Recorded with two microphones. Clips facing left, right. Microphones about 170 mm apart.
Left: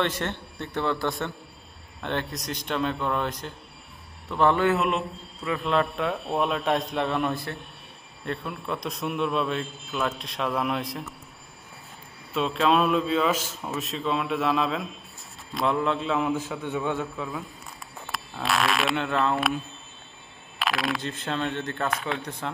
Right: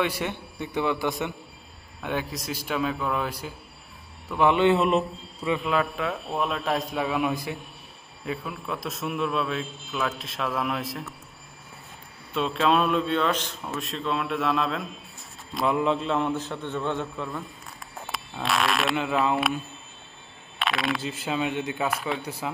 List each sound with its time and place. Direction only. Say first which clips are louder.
0.0 s a man's voice: even; 10° right (ahead or behind)
2.0 s a man's voice: even; centre (ahead or behind)
4.4 s a man's voice: right 1 dB; 20° right (ahead or behind)
4.7 s a man's voice: right 3 dB; centre (ahead or behind)
12.4 s a man's voice: even; centre (ahead or behind)